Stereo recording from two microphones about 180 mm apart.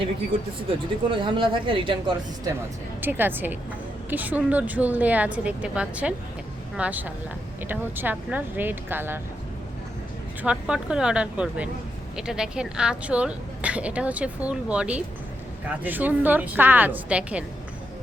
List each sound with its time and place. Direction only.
1.1 s speech: 30° right (ahead or behind)
3.0 s a woman's voice: 10° right (ahead or behind)
10.4 s a woman's voice: 5° right (ahead or behind)